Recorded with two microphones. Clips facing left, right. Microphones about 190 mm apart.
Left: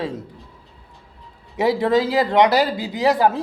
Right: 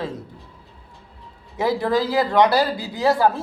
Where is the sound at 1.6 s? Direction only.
20° left (ahead or behind).